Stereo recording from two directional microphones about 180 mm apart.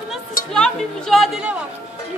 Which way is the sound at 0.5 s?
5° left (ahead or behind).